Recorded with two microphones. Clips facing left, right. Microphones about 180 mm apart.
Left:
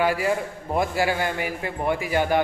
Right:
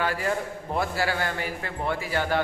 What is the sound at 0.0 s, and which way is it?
A man's voice, 10° left (ahead or behind).